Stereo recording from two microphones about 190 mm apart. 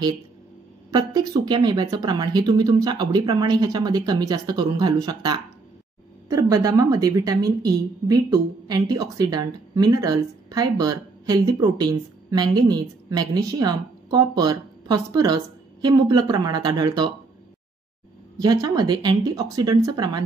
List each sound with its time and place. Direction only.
0.9 s a woman's voice: 20° right (ahead or behind)
18.4 s a woman's voice: 20° right (ahead or behind)